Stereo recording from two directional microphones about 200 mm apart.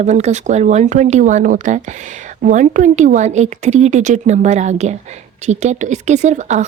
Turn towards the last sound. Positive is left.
turn(degrees=-35)  # may be behind; listen again after turning